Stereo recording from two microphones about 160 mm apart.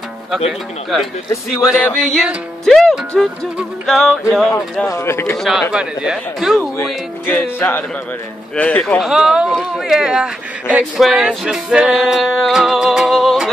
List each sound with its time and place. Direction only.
0.5 s speech: centre (ahead or behind)
4.8 s music: 15° left (ahead or behind)
5.4 s speech: 5° right (ahead or behind)
6.8 s music: 10° left (ahead or behind)
9.0 s speech: 5° right (ahead or behind)